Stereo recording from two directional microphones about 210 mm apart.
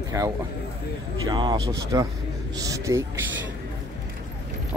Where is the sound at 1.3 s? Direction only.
20° right (ahead or behind).